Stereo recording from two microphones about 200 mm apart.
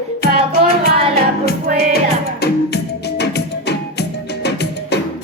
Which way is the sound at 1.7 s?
45° right (ahead or behind).